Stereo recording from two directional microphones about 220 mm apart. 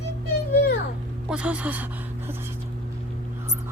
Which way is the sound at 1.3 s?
5° right (ahead or behind).